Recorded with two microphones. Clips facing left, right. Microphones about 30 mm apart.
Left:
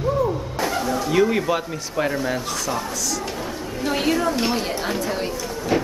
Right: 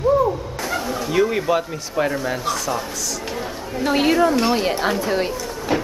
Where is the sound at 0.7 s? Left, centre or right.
Centre.